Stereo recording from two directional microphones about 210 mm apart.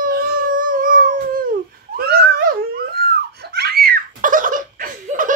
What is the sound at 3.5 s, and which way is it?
Giggle, 45° right (ahead or behind).